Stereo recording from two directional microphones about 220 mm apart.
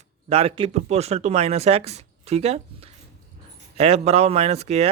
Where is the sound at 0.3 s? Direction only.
30° right (ahead or behind).